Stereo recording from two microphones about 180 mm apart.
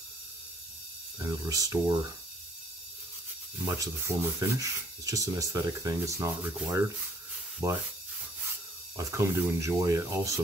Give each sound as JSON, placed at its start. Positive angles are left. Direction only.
{"t": 1.4, "sound": "speech", "side_deg": -20}
{"t": 3.6, "sound": "speech", "side_deg": -15}
{"t": 8.9, "sound": "speech", "side_deg": -15}